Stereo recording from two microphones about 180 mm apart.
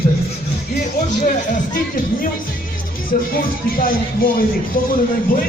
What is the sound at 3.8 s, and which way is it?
Music, 50° left (ahead or behind).